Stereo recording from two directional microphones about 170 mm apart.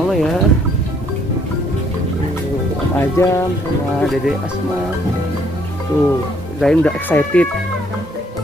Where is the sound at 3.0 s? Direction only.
15° left (ahead or behind).